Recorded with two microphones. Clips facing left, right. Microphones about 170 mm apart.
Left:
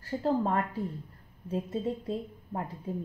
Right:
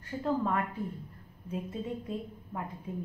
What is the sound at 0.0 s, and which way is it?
A woman's voice, 35° left (ahead or behind).